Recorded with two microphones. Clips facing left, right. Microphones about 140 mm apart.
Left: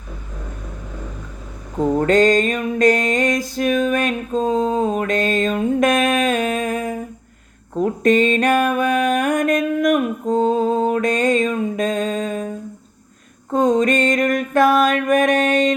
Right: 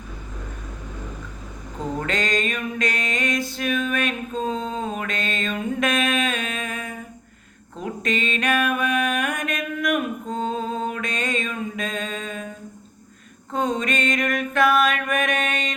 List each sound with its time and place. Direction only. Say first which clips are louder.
1.8 s music: left 12 dB; 45° left (ahead or behind)
7.8 s mantra: left 11 dB; 45° left (ahead or behind)
13.5 s music: left 8 dB; 40° left (ahead or behind)